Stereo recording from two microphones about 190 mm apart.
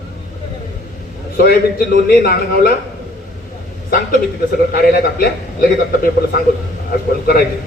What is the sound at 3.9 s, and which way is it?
A man's voice, 50° left (ahead or behind).